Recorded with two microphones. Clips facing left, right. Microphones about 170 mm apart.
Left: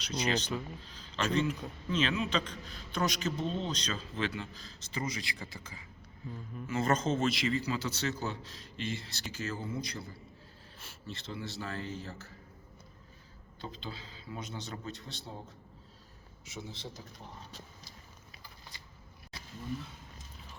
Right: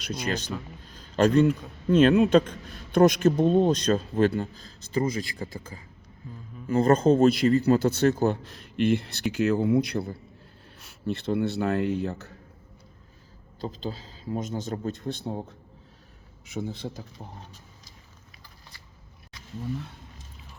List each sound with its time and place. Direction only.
0.9 s a man's voice: 50° right (ahead or behind)
6.7 s a man's voice: 35° right (ahead or behind); by 12.3 s 65° right (ahead or behind)
13.6 s a man's voice: 40° right (ahead or behind); by 15.5 s 60° right (ahead or behind)
16.6 s speech: 55° right (ahead or behind)